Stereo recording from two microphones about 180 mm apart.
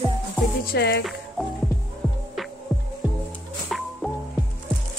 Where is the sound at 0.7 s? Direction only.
65° left (ahead or behind).